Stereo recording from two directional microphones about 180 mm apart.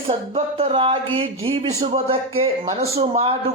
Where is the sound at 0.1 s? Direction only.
30° right (ahead or behind).